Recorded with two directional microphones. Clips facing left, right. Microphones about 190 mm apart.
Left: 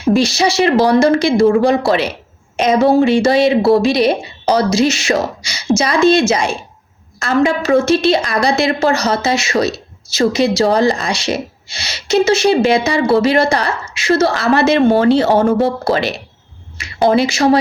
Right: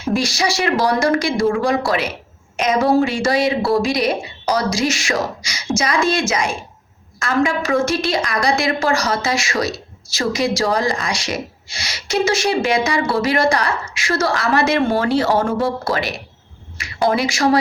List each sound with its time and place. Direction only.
0.1 s a woman's voice: 25° left (ahead or behind)